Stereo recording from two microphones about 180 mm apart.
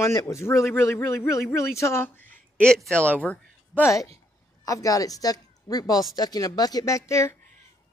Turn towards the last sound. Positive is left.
turn(degrees=15)  # may be behind; listen again after turning